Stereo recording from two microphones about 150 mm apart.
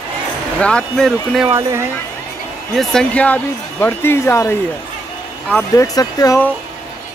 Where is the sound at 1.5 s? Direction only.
20° right (ahead or behind).